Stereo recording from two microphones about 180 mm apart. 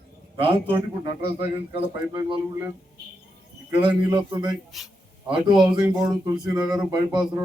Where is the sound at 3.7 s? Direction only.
25° right (ahead or behind).